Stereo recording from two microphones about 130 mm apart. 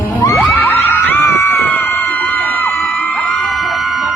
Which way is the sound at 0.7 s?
20° left (ahead or behind).